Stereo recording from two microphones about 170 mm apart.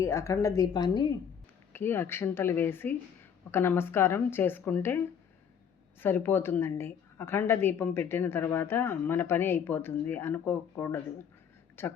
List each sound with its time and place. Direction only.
0.0 s a woman's voice: 20° left (ahead or behind)
1.7 s a woman's voice: 15° left (ahead or behind)